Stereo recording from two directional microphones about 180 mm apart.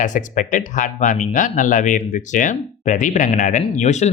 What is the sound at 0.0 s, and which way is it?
Speech, 45° left (ahead or behind).